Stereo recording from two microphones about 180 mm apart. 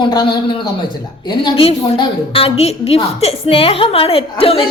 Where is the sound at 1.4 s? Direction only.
30° left (ahead or behind).